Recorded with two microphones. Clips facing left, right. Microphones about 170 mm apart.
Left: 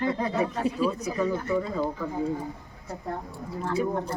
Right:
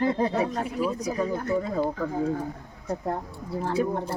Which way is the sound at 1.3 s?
45° right (ahead or behind).